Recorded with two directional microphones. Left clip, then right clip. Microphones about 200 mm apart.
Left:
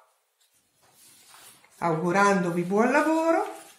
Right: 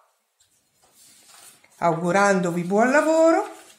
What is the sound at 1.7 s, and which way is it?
Speech, 50° right (ahead or behind).